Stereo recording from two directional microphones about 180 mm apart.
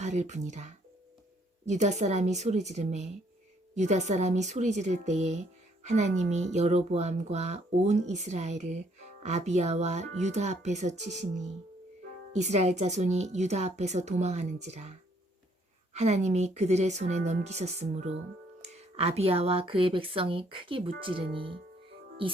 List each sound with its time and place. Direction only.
0.0 s speech: 40° right (ahead or behind)